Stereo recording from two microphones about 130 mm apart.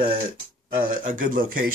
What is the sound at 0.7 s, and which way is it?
Speech, 90° right.